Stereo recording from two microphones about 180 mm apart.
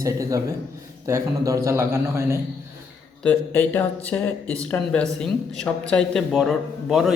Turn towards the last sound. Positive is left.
turn(degrees=0)  # may be behind; listen again after turning